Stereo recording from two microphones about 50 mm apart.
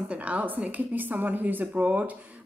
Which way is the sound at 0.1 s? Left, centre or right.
Right.